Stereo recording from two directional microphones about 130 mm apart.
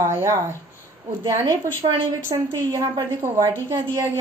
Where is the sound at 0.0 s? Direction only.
20° right (ahead or behind).